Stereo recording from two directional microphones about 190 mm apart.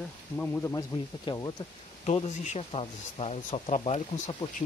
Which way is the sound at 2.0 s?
35° left (ahead or behind).